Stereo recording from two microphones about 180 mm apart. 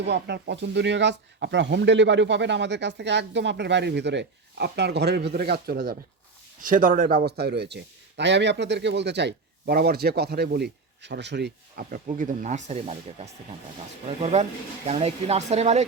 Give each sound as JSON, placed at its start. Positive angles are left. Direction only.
{"t": 0.0, "sound": "a man's voice", "side_deg": -70}
{"t": 11.9, "sound": "speech", "side_deg": -45}
{"t": 14.2, "sound": "speech", "side_deg": -40}